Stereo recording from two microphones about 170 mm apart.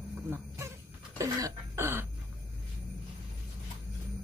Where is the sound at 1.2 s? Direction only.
20° right (ahead or behind).